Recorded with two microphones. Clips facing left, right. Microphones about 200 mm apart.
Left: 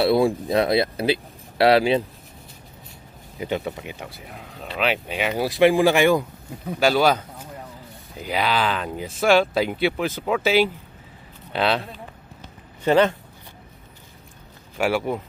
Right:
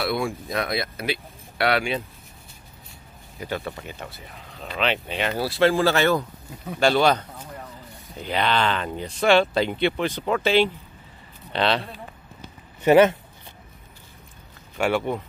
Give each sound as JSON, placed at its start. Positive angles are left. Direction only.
{"t": 0.0, "sound": "speech", "side_deg": 30}
{"t": 3.3, "sound": "speech", "side_deg": 20}
{"t": 12.8, "sound": "speech", "side_deg": -15}
{"t": 14.8, "sound": "speech", "side_deg": 5}